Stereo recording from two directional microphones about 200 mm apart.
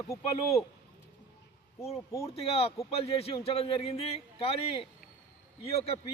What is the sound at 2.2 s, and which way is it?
A man's voice, 30° left (ahead or behind).